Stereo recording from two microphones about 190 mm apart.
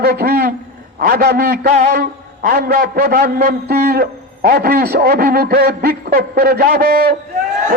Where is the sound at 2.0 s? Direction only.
50° right (ahead or behind).